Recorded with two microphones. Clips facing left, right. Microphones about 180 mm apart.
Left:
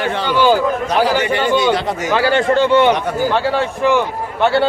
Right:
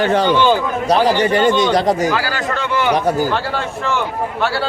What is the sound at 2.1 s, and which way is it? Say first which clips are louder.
Speech: left 5 dB; 25° left (ahead or behind).